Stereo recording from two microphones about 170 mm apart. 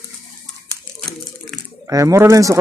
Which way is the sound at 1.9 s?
20° right (ahead or behind).